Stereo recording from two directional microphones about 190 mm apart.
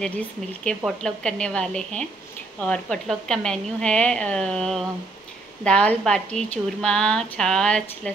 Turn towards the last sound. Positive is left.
turn(degrees=5)  # may be behind; listen again after turning